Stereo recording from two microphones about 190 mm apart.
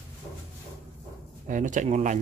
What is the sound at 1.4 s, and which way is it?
Speech, 40° right (ahead or behind).